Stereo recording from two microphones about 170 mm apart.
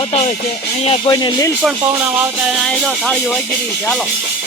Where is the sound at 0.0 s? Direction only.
35° left (ahead or behind).